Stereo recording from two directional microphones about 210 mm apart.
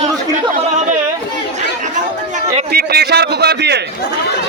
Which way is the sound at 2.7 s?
50° right (ahead or behind).